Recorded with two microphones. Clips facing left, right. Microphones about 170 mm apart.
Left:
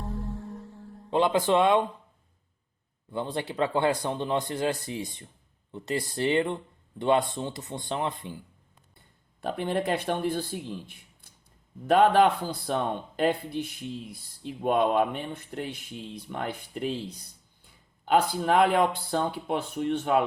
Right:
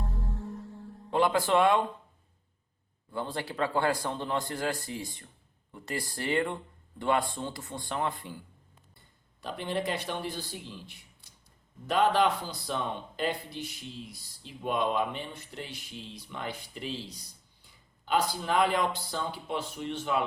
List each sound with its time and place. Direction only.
1.1 s speech: 20° left (ahead or behind)
3.1 s speech: 20° left (ahead or behind)
9.4 s a man's voice: 55° left (ahead or behind)